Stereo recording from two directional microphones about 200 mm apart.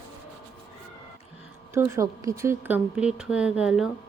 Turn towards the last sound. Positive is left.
turn(degrees=-5)  # may be behind; listen again after turning